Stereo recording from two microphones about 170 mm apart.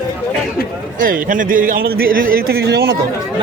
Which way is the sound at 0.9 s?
50° right (ahead or behind).